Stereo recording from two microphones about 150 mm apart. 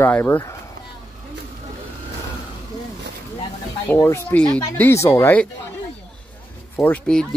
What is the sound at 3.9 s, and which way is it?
Speech, 15° left (ahead or behind).